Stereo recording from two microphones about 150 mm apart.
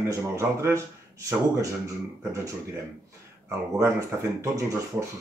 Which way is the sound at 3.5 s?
20° right (ahead or behind).